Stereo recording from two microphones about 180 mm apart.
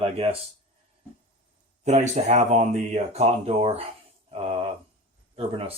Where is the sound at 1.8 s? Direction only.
40° right (ahead or behind).